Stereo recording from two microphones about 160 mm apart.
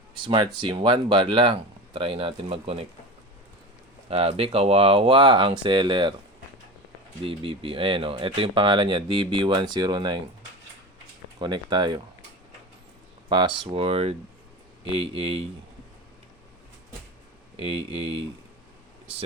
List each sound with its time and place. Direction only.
0.3 s speech: 30° right (ahead or behind)
4.1 s speech: 35° right (ahead or behind)
7.2 s speech: 35° right (ahead or behind)
11.3 s speech: 25° right (ahead or behind)
13.2 s speech: 30° right (ahead or behind)
17.6 s speech: 35° right (ahead or behind)